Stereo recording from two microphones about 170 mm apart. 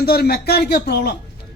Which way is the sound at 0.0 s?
65° left (ahead or behind).